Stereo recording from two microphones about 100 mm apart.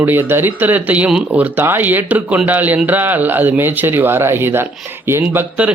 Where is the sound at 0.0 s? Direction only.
20° right (ahead or behind).